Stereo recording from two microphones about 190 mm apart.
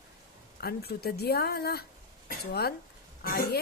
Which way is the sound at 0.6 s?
55° left (ahead or behind).